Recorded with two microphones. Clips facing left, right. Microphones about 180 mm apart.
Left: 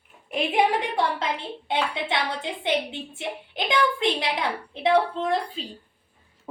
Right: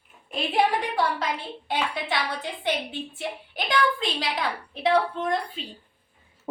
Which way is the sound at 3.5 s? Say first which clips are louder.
Left 1 dB; 20° left (ahead or behind).